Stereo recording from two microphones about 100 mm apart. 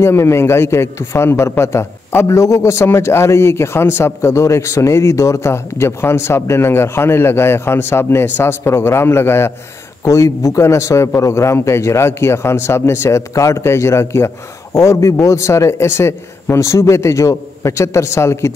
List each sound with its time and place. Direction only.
0.0 s a man's voice: 25° left (ahead or behind)